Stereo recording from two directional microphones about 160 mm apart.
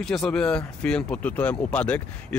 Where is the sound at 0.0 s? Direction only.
5° left (ahead or behind).